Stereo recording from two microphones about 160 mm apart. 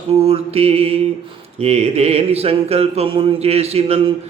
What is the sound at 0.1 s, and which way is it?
Mantra, 40° right (ahead or behind).